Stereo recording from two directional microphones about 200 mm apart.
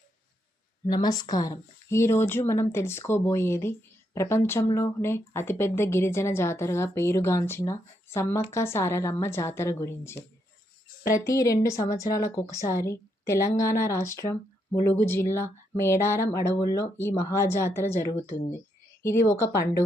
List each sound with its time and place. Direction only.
0.9 s speech: 20° left (ahead or behind)